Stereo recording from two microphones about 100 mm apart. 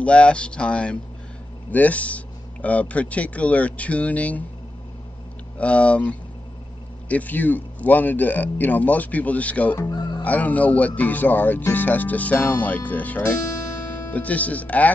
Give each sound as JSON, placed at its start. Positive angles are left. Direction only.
{"t": 0.0, "sound": "speech", "side_deg": 10}
{"t": 5.6, "sound": "speech", "side_deg": 10}